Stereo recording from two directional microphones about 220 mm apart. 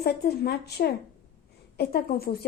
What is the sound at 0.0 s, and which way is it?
Speech, 45° left (ahead or behind).